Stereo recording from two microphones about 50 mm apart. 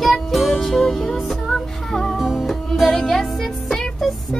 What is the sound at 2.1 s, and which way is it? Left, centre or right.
Music, centre.